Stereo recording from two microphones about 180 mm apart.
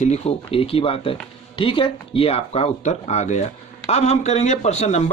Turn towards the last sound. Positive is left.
turn(degrees=40)  # may be behind; listen again after turning